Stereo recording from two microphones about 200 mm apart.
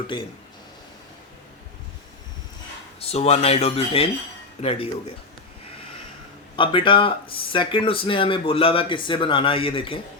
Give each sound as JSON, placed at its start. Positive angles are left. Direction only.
{"t": 0.1, "sound": "speech", "side_deg": 25}
{"t": 3.0, "sound": "speech", "side_deg": 30}
{"t": 6.6, "sound": "speech", "side_deg": 25}